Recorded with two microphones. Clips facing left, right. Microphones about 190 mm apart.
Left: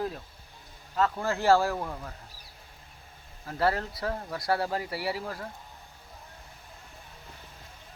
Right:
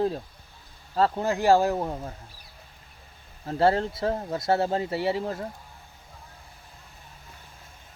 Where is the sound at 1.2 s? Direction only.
15° right (ahead or behind).